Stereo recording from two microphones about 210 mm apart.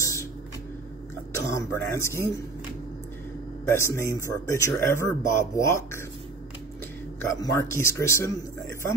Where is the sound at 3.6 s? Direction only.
10° left (ahead or behind).